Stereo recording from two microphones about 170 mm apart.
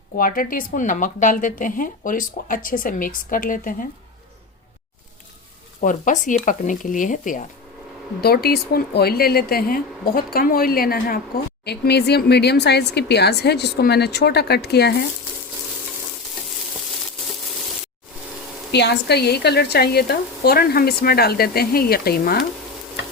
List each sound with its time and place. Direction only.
0.2 s speech: 55° left (ahead or behind)
5.8 s speech: 50° left (ahead or behind)
8.2 s a woman's voice: 65° left (ahead or behind)
11.6 s speech: 75° left (ahead or behind)
18.7 s a woman's voice: 85° left; by 22.4 s 60° left (ahead or behind)